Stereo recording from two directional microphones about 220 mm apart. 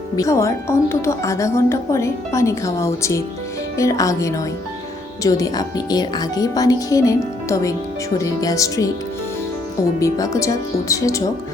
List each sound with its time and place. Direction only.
0.2 s a woman's voice: 15° left (ahead or behind)
10.0 s a woman's voice: 15° left (ahead or behind)